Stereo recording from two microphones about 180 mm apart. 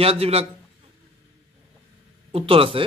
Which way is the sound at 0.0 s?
35° right (ahead or behind).